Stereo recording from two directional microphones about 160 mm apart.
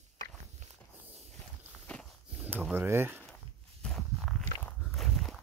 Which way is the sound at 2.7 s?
15° right (ahead or behind).